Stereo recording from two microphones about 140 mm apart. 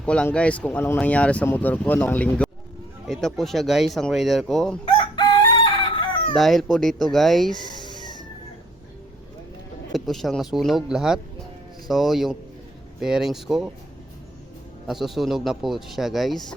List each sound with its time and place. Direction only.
0.0 s speech: 5° left (ahead or behind)
4.9 s chicken: 35° left (ahead or behind)
6.3 s speech: centre (ahead or behind)
7.5 s a sound: 30° left (ahead or behind)
9.9 s speech: centre (ahead or behind)
14.8 s speech: centre (ahead or behind)